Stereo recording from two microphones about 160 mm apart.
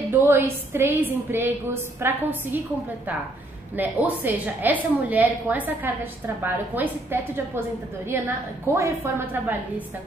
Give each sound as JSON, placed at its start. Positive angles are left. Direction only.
{"t": 0.1, "sound": "a woman's voice", "side_deg": -15}
{"t": 3.7, "sound": "a woman's voice", "side_deg": -10}